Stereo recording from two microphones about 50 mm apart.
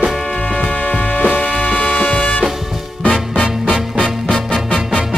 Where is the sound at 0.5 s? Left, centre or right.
Left.